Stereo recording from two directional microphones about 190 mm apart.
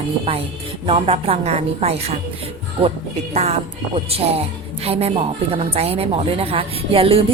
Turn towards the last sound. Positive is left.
turn(degrees=-30)  # may be behind; listen again after turning